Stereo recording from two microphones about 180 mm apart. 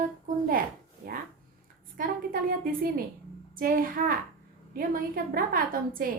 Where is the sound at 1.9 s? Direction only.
50° right (ahead or behind).